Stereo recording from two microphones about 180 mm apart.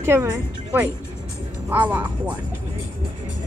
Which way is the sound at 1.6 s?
10° right (ahead or behind).